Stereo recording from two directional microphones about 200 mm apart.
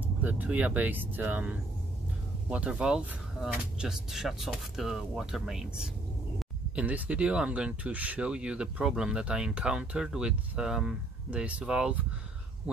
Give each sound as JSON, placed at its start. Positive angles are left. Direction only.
{"t": 0.0, "sound": "speech", "side_deg": -10}